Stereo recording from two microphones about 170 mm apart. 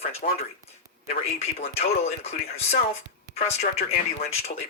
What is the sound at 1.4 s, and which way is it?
Speech, 40° left (ahead or behind).